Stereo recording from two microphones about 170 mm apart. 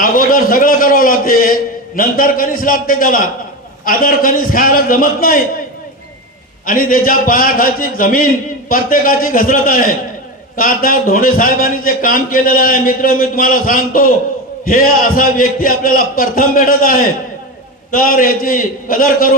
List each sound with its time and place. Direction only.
0.0 s a man's voice: 55° left (ahead or behind)
6.7 s a man's voice: 55° left (ahead or behind)